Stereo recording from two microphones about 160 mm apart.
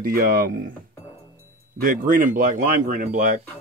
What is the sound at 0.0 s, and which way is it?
Speech, 65° right (ahead or behind).